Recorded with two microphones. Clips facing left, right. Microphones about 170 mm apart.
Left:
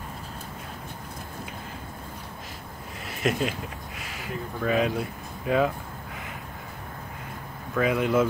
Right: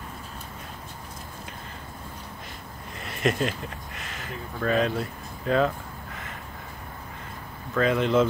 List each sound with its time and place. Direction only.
3.0 s speech: 5° left (ahead or behind)
7.7 s speech: 10° left (ahead or behind)